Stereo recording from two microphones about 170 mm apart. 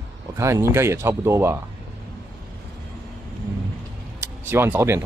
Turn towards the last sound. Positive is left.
turn(degrees=-15)  # may be behind; listen again after turning